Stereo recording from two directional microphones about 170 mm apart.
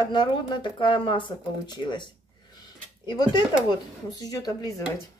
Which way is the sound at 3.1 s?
25° left (ahead or behind).